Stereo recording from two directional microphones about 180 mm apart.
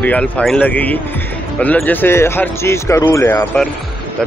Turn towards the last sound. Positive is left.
turn(degrees=10)  # may be behind; listen again after turning